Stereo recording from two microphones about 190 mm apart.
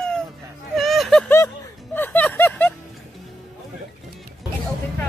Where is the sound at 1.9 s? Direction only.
10° left (ahead or behind).